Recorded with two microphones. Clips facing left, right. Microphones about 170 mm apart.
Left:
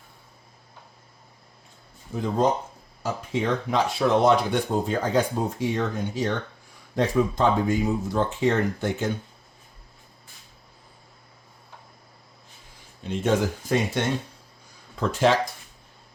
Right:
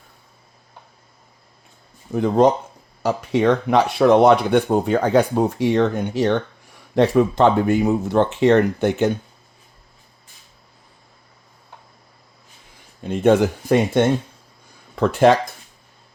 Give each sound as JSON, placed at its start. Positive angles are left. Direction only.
{"t": 2.1, "sound": "speech", "side_deg": -70}
{"t": 13.0, "sound": "speech", "side_deg": -55}